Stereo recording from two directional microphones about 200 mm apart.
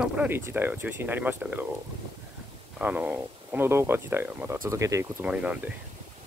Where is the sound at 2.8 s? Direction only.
10° right (ahead or behind).